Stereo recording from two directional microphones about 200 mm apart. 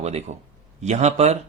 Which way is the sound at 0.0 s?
35° right (ahead or behind).